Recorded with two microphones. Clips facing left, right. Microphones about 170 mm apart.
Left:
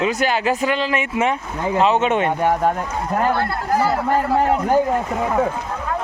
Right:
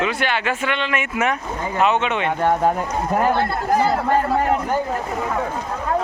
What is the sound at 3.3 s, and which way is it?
Speech, 20° right (ahead or behind).